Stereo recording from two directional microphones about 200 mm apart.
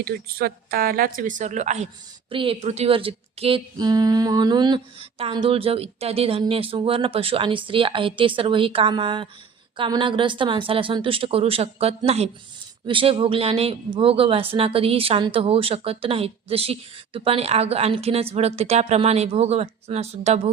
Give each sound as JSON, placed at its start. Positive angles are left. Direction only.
{"t": 0.0, "sound": "speech", "side_deg": -50}